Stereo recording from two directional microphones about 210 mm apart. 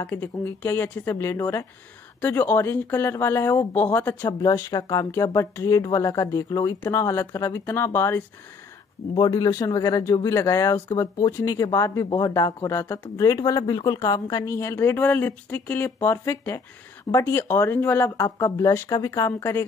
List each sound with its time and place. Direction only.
0.0 s speech: 10° left (ahead or behind)